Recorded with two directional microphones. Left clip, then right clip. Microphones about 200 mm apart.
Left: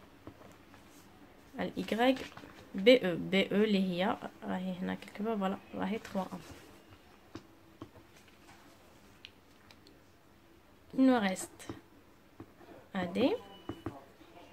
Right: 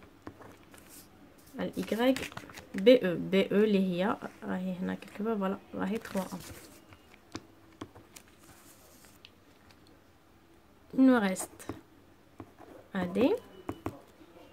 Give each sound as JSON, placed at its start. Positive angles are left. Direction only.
{"t": 1.6, "sound": "speech", "side_deg": -10}
{"t": 11.0, "sound": "a woman's voice", "side_deg": -25}
{"t": 12.9, "sound": "speech", "side_deg": -20}